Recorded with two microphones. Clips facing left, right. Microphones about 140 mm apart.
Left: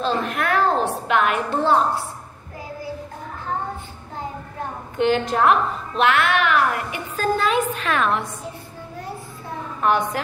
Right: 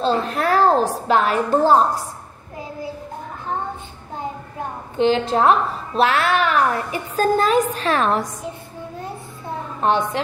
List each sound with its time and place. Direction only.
0.0 s a woman's voice: 35° right (ahead or behind)
4.9 s a woman's voice: 30° right (ahead or behind)
9.8 s a woman's voice: 30° right (ahead or behind)